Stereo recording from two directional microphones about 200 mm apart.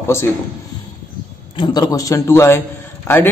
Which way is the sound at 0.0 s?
15° left (ahead or behind).